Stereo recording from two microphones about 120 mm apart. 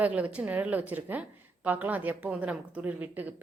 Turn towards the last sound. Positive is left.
turn(degrees=-15)  # may be behind; listen again after turning